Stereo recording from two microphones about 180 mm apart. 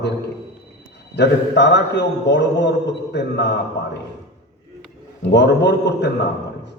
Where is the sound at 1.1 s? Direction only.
75° left (ahead or behind).